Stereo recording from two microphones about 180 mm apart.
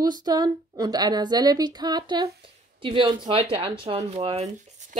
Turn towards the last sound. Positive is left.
turn(degrees=-40)  # may be behind; listen again after turning